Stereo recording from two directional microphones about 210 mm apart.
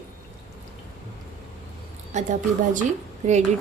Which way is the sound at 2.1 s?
35° right (ahead or behind).